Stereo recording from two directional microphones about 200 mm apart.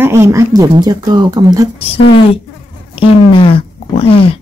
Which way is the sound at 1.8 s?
30° left (ahead or behind).